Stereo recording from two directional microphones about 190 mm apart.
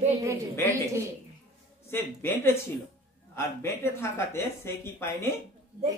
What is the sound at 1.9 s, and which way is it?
Speech, 10° left (ahead or behind).